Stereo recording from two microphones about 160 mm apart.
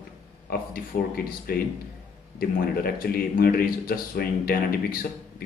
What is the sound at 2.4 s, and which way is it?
A man's voice, 65° left (ahead or behind).